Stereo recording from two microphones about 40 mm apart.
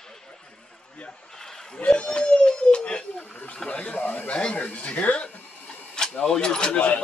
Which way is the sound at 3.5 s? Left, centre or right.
Left.